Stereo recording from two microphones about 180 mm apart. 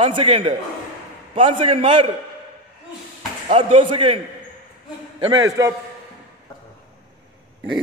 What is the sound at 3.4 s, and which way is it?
Speech, 30° right (ahead or behind).